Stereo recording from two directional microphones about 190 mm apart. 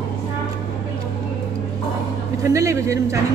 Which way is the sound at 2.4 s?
15° right (ahead or behind).